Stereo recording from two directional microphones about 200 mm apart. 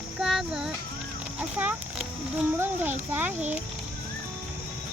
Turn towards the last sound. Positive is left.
turn(degrees=-10)  # may be behind; listen again after turning